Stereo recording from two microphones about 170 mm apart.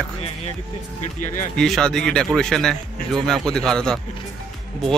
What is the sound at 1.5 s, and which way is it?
Speech, 5° left (ahead or behind).